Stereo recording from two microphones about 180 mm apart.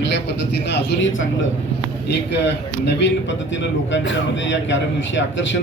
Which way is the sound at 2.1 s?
70° left (ahead or behind).